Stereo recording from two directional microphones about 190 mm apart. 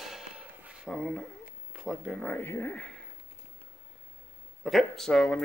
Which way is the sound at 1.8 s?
Centre (ahead or behind).